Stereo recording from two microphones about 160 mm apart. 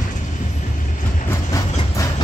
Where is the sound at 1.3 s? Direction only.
20° left (ahead or behind).